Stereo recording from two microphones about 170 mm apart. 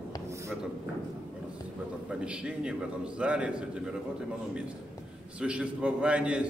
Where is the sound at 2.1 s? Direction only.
5° right (ahead or behind).